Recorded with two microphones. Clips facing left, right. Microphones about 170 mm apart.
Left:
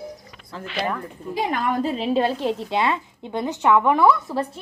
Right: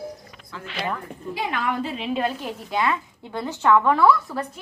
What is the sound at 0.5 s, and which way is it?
A woman's voice, 35° left (ahead or behind).